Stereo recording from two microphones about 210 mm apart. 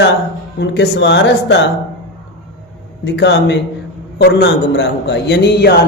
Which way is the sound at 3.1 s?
55° left (ahead or behind).